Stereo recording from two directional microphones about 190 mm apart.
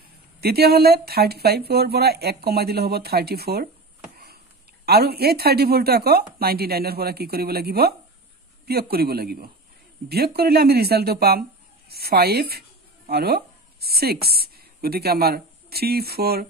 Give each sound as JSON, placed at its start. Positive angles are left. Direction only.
{"t": 0.4, "sound": "speech", "side_deg": -55}
{"t": 4.8, "sound": "speech", "side_deg": -55}
{"t": 8.9, "sound": "speech", "side_deg": -55}